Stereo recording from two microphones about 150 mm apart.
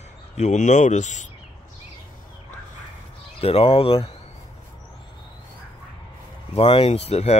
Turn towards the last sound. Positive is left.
turn(degrees=45)  # may be behind; listen again after turning